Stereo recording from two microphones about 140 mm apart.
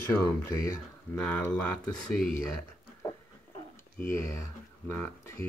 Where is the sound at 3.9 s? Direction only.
15° left (ahead or behind).